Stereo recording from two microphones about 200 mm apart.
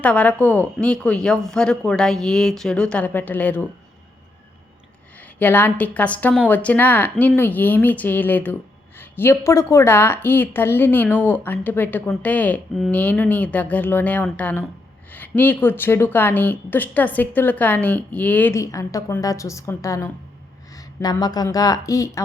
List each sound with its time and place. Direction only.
0.0 s speech: 5° left (ahead or behind)
5.4 s a woman's voice: 10° left (ahead or behind)